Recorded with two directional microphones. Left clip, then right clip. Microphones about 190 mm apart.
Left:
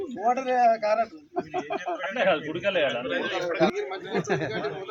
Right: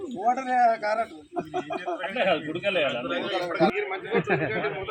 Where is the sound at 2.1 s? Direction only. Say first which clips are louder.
Left 1 dB; 10° right (ahead or behind).